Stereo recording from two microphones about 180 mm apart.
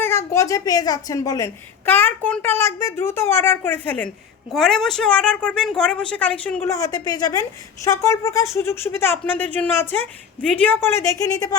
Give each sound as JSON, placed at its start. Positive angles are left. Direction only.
{"t": 0.0, "sound": "a woman's voice", "side_deg": 15}